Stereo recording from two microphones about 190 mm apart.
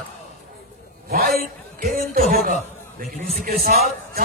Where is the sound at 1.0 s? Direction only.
50° right (ahead or behind).